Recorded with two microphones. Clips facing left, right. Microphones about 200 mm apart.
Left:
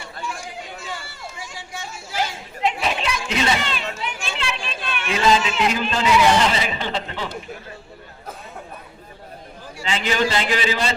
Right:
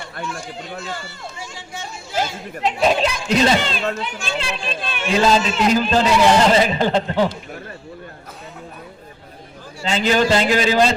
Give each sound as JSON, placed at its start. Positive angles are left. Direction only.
{"t": 0.3, "sound": "speech", "side_deg": 10}
{"t": 2.6, "sound": "a man's voice", "side_deg": -40}
{"t": 9.8, "sound": "a man's voice", "side_deg": -40}